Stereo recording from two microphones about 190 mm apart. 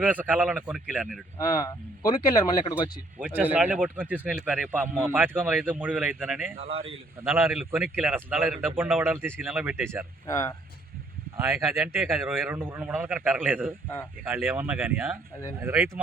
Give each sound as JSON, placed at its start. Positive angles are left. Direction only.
{"t": 0.0, "sound": "speech", "side_deg": -10}
{"t": 1.4, "sound": "speech", "side_deg": 20}
{"t": 3.2, "sound": "speech", "side_deg": -5}
{"t": 6.6, "sound": "speech", "side_deg": -30}
{"t": 7.2, "sound": "speech", "side_deg": -10}
{"t": 10.2, "sound": "speech", "side_deg": 15}
{"t": 11.3, "sound": "speech", "side_deg": -15}
{"t": 12.1, "sound": "speech", "side_deg": 0}